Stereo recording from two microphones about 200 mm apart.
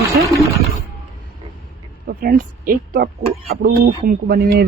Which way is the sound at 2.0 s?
50° right (ahead or behind).